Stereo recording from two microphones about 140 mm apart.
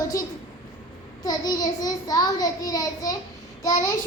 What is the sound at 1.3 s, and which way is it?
A child's voice, 25° left (ahead or behind).